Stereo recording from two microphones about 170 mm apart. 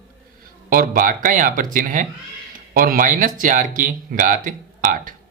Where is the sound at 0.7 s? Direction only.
55° right (ahead or behind).